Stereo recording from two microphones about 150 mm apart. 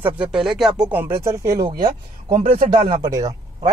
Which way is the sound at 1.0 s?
20° right (ahead or behind).